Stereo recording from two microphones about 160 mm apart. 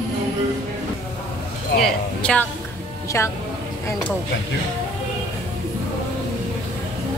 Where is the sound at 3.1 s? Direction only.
15° left (ahead or behind).